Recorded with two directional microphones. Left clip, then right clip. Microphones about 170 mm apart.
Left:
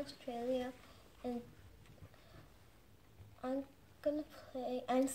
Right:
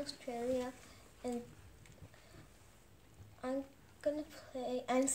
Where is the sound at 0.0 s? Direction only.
10° right (ahead or behind).